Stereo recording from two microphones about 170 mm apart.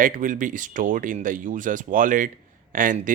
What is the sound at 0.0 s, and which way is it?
Speech, 50° right (ahead or behind).